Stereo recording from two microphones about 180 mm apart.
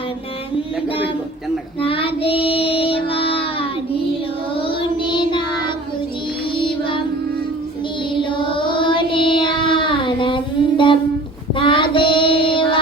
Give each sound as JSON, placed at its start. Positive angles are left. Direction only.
{"t": 1.8, "sound": "child singing", "side_deg": 30}
{"t": 8.1, "sound": "child singing", "side_deg": 25}